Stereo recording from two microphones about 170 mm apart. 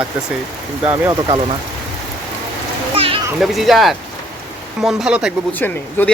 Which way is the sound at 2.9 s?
35° right (ahead or behind).